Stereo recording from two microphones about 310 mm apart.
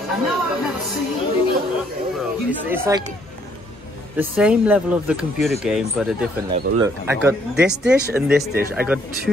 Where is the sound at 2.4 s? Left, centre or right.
Centre.